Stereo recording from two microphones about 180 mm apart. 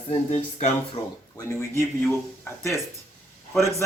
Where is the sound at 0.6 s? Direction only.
35° left (ahead or behind).